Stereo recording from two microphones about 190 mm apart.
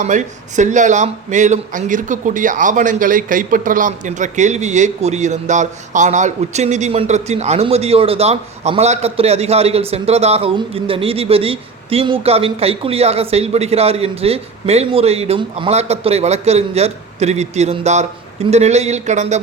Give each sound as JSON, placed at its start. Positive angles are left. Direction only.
{"t": 0.0, "sound": "speech", "side_deg": -40}